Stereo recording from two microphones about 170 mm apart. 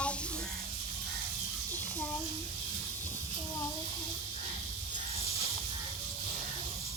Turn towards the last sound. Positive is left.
turn(degrees=35)  # may be behind; listen again after turning